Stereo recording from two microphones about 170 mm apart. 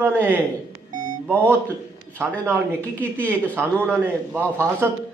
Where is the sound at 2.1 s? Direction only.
10° right (ahead or behind).